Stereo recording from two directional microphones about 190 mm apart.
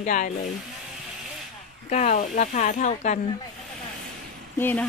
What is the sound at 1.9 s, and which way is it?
Speech, 40° left (ahead or behind).